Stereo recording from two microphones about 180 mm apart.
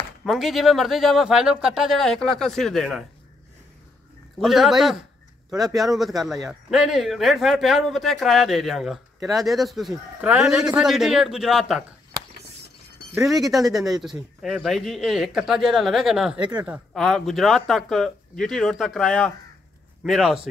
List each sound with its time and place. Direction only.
0.2 s speech: centre (ahead or behind)
4.4 s speech: centre (ahead or behind)
13.3 s speech: centre (ahead or behind)
16.3 s speech: 25° right (ahead or behind)
16.6 s speech: centre (ahead or behind)